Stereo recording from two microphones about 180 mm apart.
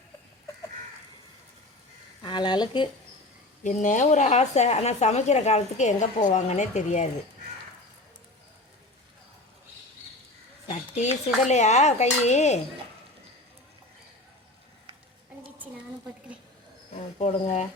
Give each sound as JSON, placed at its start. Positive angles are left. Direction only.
{"t": 2.2, "sound": "speech", "side_deg": 25}
{"t": 3.6, "sound": "a woman's voice", "side_deg": 45}
{"t": 10.7, "sound": "a woman's voice", "side_deg": 40}
{"t": 17.2, "sound": "a woman's voice", "side_deg": 40}